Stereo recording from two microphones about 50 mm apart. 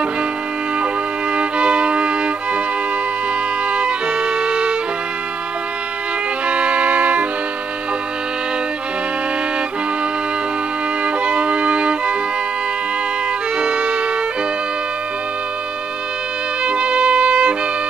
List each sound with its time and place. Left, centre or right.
1.3 s violin: right
3.7 s music: right
6.4 s music: right
11.2 s music: right
13.6 s music: right
16.6 s music: right